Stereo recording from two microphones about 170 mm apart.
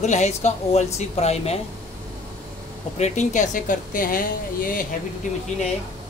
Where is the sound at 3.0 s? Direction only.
40° left (ahead or behind).